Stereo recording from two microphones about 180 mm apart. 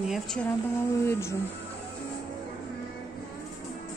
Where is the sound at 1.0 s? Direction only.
15° left (ahead or behind).